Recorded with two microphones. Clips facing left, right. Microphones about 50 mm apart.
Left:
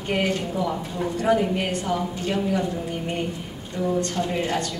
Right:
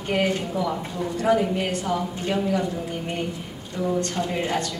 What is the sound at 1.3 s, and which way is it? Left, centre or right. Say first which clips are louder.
Speech: even; centre.